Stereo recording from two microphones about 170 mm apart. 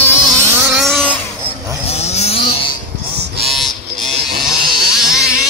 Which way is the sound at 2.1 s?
40° left (ahead or behind).